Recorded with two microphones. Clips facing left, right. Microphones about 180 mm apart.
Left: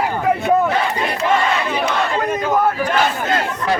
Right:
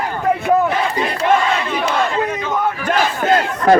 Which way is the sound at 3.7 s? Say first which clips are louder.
Right 9 dB; 50° right (ahead or behind).